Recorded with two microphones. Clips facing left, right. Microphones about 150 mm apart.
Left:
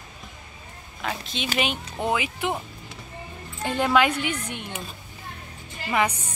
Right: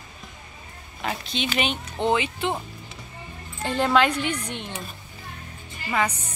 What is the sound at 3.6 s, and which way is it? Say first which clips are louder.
Speech: even; 10° left (ahead or behind).